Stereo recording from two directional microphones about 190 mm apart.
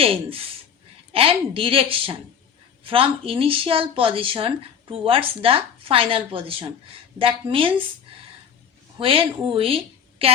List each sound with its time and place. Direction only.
0.0 s speech: 30° right (ahead or behind)
9.0 s a woman's voice: 30° right (ahead or behind)